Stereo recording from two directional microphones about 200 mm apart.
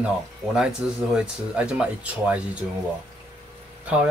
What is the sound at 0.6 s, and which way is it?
Speech, 5° right (ahead or behind).